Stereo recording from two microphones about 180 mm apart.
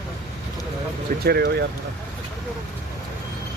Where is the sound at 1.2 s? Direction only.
60° right (ahead or behind).